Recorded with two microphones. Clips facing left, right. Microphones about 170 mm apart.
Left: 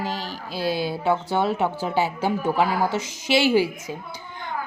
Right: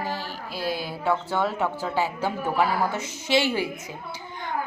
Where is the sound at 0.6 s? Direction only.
80° left.